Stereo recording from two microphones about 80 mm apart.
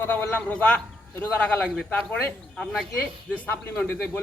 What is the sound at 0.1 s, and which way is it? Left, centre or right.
Speech, left.